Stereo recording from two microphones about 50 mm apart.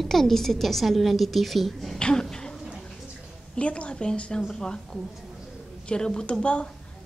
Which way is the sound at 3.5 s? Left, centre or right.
Left.